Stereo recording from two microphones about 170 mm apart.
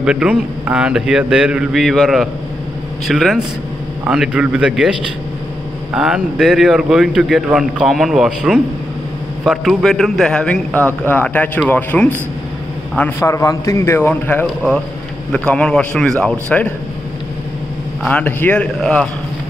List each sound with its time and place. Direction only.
0.0 s speech: 5° right (ahead or behind)
5.9 s a man's voice: 5° right (ahead or behind)
13.2 s a man's voice: 20° left (ahead or behind)
18.0 s a man's voice: 10° left (ahead or behind)